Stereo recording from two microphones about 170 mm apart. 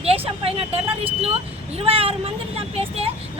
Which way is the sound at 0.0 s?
35° right (ahead or behind).